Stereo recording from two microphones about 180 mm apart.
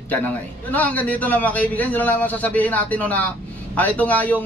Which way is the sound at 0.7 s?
10° left (ahead or behind).